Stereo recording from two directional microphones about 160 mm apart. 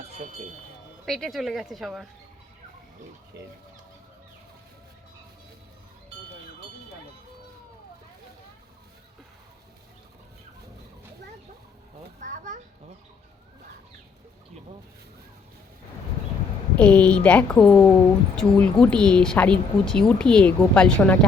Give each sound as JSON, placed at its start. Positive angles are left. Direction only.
{"t": 1.0, "sound": "speech", "side_deg": 0}
{"t": 12.2, "sound": "a sound", "side_deg": -50}
{"t": 16.7, "sound": "a woman's voice", "side_deg": 10}